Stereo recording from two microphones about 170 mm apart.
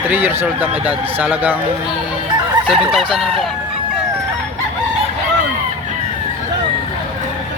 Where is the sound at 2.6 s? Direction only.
5° right (ahead or behind).